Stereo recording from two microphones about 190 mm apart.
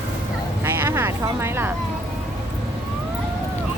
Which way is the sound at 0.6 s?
10° right (ahead or behind).